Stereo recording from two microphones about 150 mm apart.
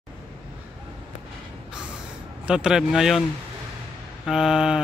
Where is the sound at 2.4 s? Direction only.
5° right (ahead or behind).